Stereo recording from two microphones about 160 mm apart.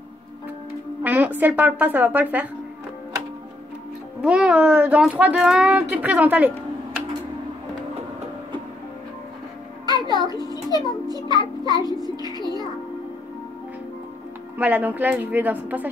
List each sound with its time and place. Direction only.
1.0 s a child's voice: 10° right (ahead or behind)
4.2 s a child's voice: 5° right (ahead or behind)
9.8 s a sound: 25° right (ahead or behind)
11.1 s music: 25° right (ahead or behind)
14.6 s a child's voice: 10° right (ahead or behind)